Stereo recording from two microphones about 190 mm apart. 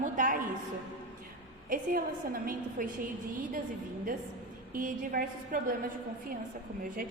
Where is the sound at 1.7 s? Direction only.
45° right (ahead or behind).